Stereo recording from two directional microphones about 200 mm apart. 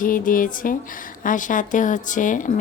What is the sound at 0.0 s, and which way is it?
Speech, 45° left (ahead or behind).